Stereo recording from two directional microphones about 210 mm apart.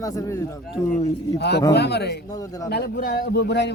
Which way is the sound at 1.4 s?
50° left (ahead or behind).